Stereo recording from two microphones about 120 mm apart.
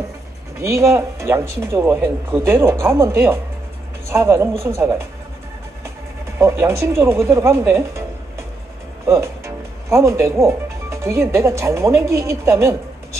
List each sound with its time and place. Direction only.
0.6 s speech: 25° right (ahead or behind)
6.3 s speech: 25° right (ahead or behind)
9.0 s speech: 20° right (ahead or behind)